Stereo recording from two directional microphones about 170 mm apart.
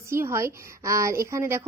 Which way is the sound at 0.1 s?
15° right (ahead or behind).